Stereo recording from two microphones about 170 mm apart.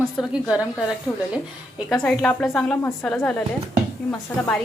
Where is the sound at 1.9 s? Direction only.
5° left (ahead or behind).